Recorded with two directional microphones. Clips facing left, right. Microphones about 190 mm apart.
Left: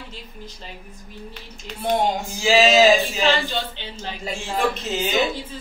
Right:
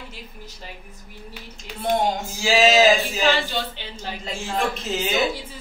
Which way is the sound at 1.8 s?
Centre (ahead or behind).